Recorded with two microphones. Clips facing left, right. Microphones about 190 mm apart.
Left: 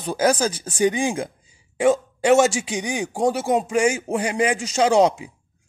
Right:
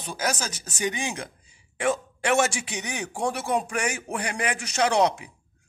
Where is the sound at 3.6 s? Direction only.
25° left (ahead or behind).